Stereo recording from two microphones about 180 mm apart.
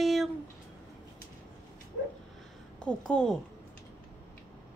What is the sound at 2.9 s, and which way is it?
Speech, 5° left (ahead or behind).